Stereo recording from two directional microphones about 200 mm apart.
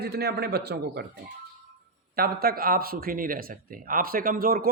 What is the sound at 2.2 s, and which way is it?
A man's voice, 50° right (ahead or behind).